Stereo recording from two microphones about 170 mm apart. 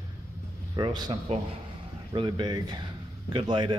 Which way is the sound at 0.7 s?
25° right (ahead or behind).